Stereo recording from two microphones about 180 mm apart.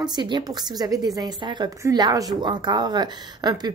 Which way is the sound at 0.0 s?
25° right (ahead or behind).